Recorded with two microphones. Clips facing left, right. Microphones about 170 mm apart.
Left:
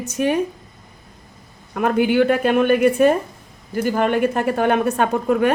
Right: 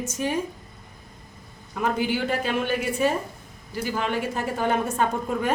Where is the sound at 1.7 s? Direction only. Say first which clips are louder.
Left 8 dB; 60° left (ahead or behind).